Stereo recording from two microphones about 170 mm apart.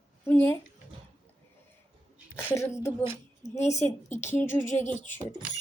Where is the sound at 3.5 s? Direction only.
40° left (ahead or behind).